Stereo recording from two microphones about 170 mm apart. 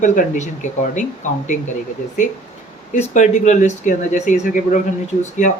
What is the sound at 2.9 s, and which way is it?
Speech, 45° left (ahead or behind).